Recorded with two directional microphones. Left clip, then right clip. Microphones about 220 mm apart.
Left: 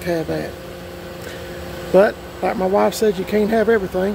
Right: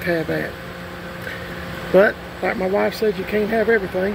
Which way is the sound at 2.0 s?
10° left (ahead or behind).